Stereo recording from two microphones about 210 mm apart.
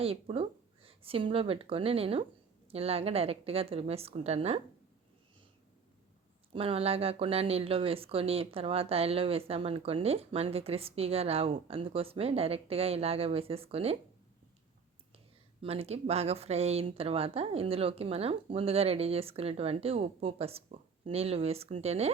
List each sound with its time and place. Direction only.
0.0 s speech: 25° right (ahead or behind)
6.5 s speech: 25° right (ahead or behind)
15.6 s speech: 30° right (ahead or behind)